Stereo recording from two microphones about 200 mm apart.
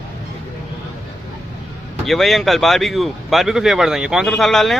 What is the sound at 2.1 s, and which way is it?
Speech, centre (ahead or behind).